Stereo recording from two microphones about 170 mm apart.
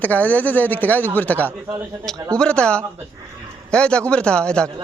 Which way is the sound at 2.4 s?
5° left (ahead or behind).